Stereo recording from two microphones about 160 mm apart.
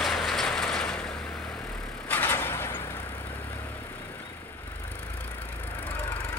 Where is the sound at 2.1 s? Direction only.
15° left (ahead or behind).